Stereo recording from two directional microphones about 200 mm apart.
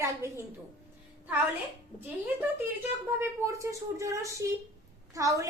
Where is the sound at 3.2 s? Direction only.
15° right (ahead or behind).